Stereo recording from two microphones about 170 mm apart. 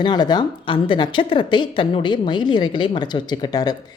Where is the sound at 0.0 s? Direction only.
25° left (ahead or behind).